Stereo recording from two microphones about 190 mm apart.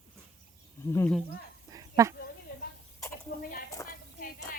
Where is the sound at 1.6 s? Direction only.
20° right (ahead or behind).